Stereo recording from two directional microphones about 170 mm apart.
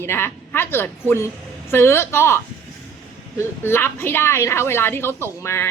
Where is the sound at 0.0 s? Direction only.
15° left (ahead or behind).